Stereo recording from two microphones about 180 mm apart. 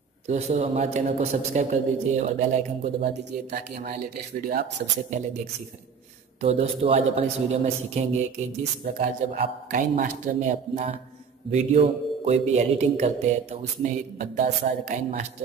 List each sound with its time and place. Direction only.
0.3 s a man's voice: 35° right (ahead or behind); by 4.8 s 55° right (ahead or behind)
6.4 s a man's voice: 35° right (ahead or behind)